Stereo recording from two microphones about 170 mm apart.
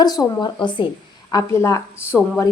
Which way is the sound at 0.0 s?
25° left (ahead or behind).